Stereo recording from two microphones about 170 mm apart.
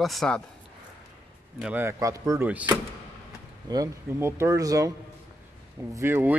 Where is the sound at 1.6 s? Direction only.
10° right (ahead or behind).